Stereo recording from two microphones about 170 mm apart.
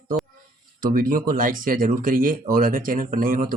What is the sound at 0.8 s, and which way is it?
Speech, 55° right (ahead or behind).